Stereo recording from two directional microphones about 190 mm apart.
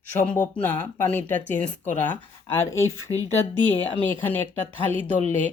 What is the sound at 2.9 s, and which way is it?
Speech, 90° left.